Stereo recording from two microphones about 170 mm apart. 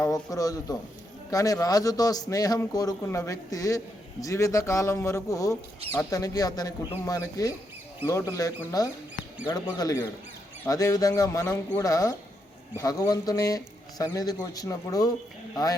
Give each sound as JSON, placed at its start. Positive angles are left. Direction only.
{"t": 0.0, "sound": "a man's voice", "side_deg": 20}